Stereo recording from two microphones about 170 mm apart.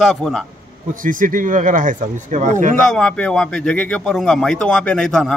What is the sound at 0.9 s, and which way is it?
Speech, 55° right (ahead or behind).